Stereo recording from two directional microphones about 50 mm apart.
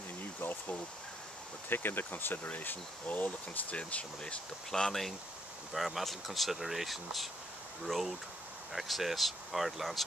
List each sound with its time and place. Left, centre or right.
0.4 s a sound: left
1.7 s speech: left
4.6 s speech: centre